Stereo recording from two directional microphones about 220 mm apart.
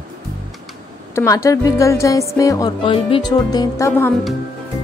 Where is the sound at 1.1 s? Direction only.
15° left (ahead or behind).